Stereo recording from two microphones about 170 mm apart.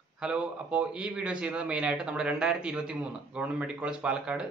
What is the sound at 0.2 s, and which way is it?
A man's voice, 5° right (ahead or behind).